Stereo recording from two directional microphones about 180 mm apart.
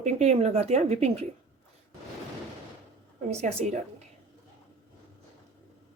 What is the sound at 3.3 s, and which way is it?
Speech, 40° right (ahead or behind).